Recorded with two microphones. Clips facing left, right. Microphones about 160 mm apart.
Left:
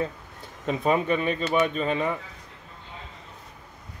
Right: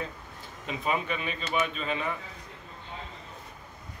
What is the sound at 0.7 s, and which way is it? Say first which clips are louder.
Speech: left 7 dB; 40° left (ahead or behind).